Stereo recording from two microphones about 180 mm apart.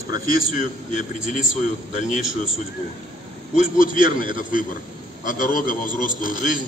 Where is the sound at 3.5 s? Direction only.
50° left (ahead or behind).